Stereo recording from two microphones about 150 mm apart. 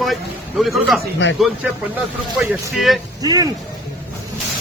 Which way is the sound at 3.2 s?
25° right (ahead or behind).